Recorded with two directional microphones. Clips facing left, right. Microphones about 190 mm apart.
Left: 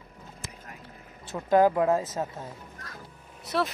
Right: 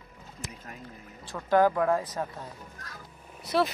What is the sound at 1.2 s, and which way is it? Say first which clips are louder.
Speech: left 2 dB; 20° left (ahead or behind).